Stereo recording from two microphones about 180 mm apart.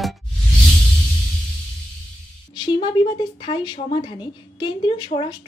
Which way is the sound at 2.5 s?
25° left (ahead or behind).